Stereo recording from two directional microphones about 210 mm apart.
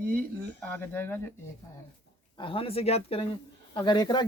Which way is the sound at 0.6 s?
10° left (ahead or behind).